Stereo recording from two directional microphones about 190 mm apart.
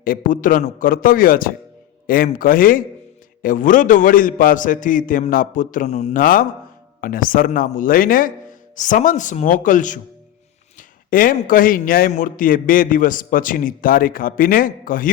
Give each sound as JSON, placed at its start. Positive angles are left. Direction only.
{"t": 0.0, "sound": "a man's voice", "side_deg": 45}